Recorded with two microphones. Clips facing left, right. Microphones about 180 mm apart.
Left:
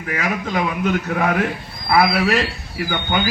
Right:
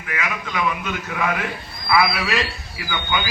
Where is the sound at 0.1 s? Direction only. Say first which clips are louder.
Left 5 dB; 40° left (ahead or behind).